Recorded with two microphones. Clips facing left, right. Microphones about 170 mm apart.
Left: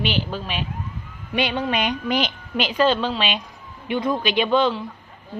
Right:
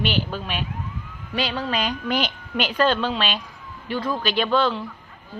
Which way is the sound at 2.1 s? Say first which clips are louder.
Left 1 dB; 45° right (ahead or behind).